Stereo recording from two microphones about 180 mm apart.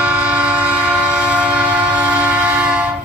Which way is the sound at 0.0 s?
5° right (ahead or behind).